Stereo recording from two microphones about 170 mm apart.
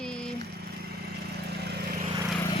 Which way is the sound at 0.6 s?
70° right (ahead or behind).